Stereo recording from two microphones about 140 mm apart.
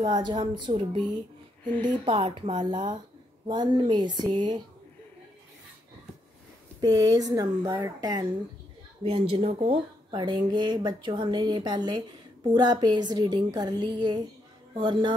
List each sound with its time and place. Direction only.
0.0 s speech: 30° right (ahead or behind)
6.8 s speech: 30° right (ahead or behind)
9.0 s a woman's voice: 45° right (ahead or behind)
10.1 s speech: 35° right (ahead or behind)